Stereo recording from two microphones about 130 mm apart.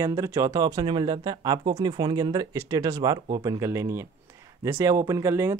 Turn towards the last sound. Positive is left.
turn(degrees=-20)  # may be behind; listen again after turning